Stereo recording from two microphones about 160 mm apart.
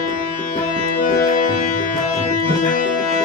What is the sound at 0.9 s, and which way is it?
Music, 55° left (ahead or behind).